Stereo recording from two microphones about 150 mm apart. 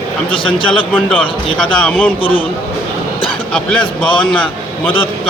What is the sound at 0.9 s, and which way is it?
Speech, 10° left (ahead or behind).